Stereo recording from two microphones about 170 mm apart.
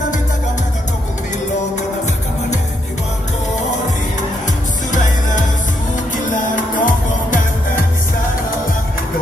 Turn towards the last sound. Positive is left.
turn(degrees=50)  # may be behind; listen again after turning